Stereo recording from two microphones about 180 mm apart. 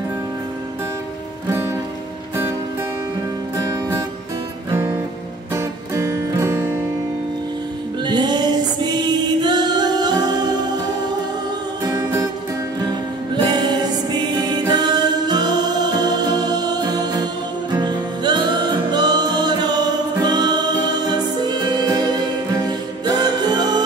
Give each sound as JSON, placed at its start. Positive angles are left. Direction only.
{"t": 3.5, "sound": "music", "side_deg": -20}
{"t": 5.5, "sound": "music", "side_deg": -15}
{"t": 8.0, "sound": "music", "side_deg": -25}
{"t": 11.8, "sound": "music", "side_deg": -20}